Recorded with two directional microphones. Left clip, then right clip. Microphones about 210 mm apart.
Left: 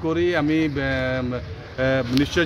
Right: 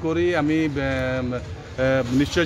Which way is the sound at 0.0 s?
5° left (ahead or behind).